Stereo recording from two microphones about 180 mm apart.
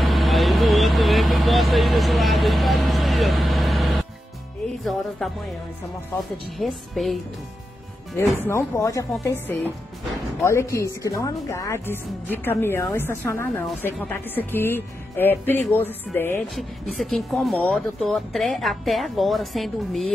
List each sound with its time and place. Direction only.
0.0 s vehicle: centre (ahead or behind)
5.2 s speech: centre (ahead or behind)
6.6 s speech: centre (ahead or behind)
8.5 s a woman's voice: 15° left (ahead or behind)
16.5 s speech: centre (ahead or behind)